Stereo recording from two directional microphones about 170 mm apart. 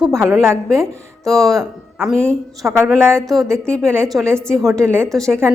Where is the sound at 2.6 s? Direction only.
15° right (ahead or behind).